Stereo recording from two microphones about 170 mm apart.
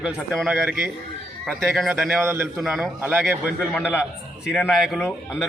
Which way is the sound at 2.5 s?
Centre (ahead or behind).